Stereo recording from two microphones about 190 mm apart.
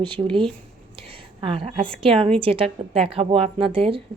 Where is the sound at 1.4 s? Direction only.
30° right (ahead or behind).